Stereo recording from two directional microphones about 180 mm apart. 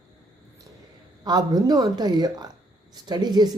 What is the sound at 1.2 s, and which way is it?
Speech, 20° right (ahead or behind).